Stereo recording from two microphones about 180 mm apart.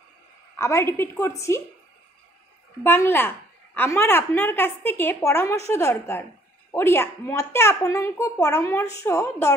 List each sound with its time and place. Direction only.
0.6 s a child's voice: 15° left (ahead or behind)
2.8 s a child's voice: 10° left (ahead or behind)